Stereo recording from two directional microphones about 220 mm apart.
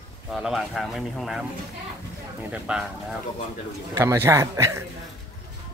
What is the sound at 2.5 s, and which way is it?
Speech, 5° right (ahead or behind).